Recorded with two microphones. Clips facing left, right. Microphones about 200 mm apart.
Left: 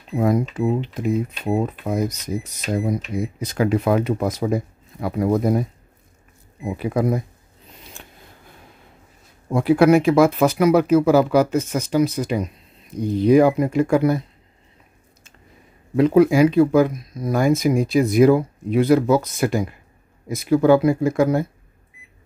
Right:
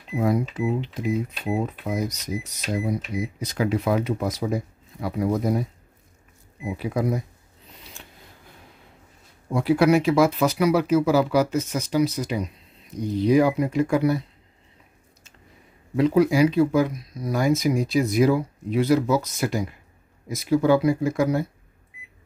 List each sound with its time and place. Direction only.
0.1 s speech: 50° left (ahead or behind)
8.0 s a sound: 50° left (ahead or behind)
9.5 s speech: 50° left (ahead or behind)
16.0 s speech: 55° left (ahead or behind)